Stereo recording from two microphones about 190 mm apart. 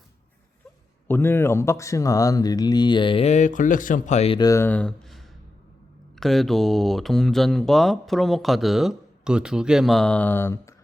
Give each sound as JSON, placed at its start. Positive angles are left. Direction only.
{"t": 1.0, "sound": "speech", "side_deg": 10}
{"t": 4.4, "sound": "speech", "side_deg": 15}